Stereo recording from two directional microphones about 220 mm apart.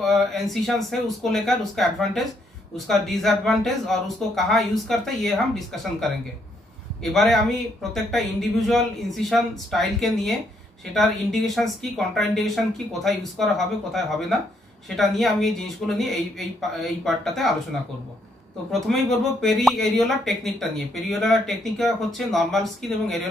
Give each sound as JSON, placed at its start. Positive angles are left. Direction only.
{"t": 0.0, "sound": "speech", "side_deg": 0}
{"t": 15.0, "sound": "speech", "side_deg": 0}
{"t": 18.7, "sound": "speech", "side_deg": 0}